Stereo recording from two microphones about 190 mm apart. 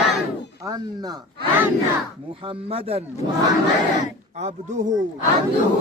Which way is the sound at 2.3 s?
30° right (ahead or behind).